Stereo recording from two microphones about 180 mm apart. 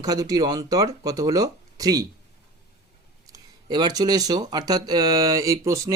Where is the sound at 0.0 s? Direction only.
20° right (ahead or behind).